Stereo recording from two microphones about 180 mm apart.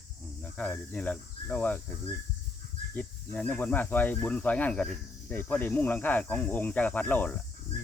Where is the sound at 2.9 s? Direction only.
5° left (ahead or behind).